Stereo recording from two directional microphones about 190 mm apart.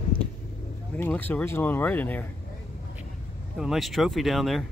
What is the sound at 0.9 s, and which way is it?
Speech, 10° left (ahead or behind).